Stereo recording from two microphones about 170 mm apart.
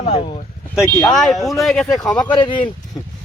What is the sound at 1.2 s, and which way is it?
Speech, centre (ahead or behind).